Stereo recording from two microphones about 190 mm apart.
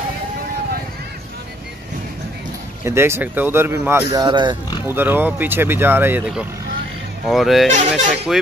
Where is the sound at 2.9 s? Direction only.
15° right (ahead or behind).